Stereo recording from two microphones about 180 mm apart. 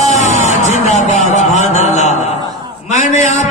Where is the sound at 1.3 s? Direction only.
40° left (ahead or behind).